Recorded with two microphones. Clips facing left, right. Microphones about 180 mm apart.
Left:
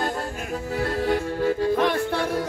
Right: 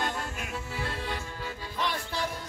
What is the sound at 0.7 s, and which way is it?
Music, 45° left (ahead or behind).